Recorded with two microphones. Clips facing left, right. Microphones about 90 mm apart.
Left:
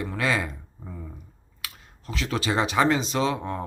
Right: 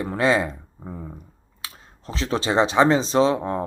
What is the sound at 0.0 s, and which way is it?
Speech, 30° right (ahead or behind).